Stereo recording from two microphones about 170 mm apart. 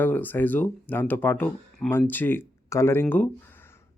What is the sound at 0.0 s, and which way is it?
Speech, 10° left (ahead or behind).